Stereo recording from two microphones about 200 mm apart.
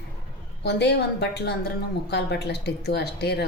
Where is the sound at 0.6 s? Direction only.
60° left (ahead or behind).